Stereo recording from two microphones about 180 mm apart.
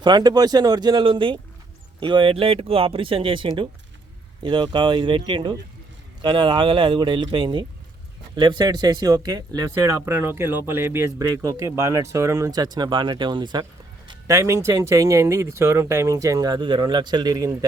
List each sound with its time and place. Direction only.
0.0 s speech: 20° right (ahead or behind)